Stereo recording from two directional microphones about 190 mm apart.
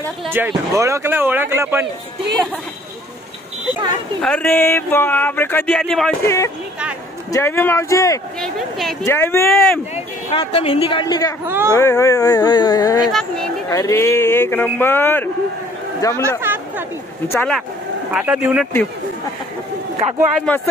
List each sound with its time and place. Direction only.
0.3 s speech: 10° right (ahead or behind)
4.2 s speech: 5° left (ahead or behind)
6.2 s speech: 15° left (ahead or behind)
8.4 s a sound: centre (ahead or behind)
9.0 s speech: 15° left (ahead or behind)
9.9 s a woman's voice: 30° left (ahead or behind)
11.4 s speech: 10° right (ahead or behind)
11.7 s a woman's voice: 15° left (ahead or behind)
13.0 s a sound: centre (ahead or behind)
13.7 s speech: 15° left (ahead or behind)
16.2 s chatter: 15° right (ahead or behind)
17.3 s speech: 10° left (ahead or behind)
18.1 s speech: 5° right (ahead or behind)
20.3 s speech: 5° left (ahead or behind)